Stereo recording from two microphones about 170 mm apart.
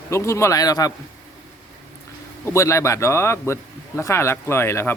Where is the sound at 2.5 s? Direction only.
15° left (ahead or behind).